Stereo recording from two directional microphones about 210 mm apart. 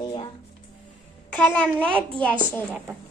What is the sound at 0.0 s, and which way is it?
Music, 25° left (ahead or behind).